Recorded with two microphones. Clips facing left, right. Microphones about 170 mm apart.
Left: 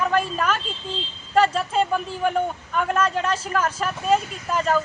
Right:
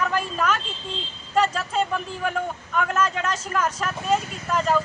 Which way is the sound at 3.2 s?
30° left (ahead or behind).